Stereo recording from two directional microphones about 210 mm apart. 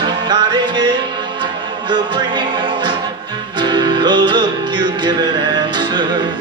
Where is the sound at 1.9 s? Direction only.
20° right (ahead or behind).